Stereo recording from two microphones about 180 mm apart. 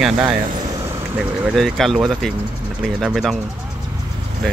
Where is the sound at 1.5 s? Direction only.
Centre (ahead or behind).